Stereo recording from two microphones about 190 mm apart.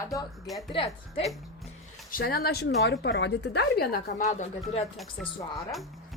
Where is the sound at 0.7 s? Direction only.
30° left (ahead or behind).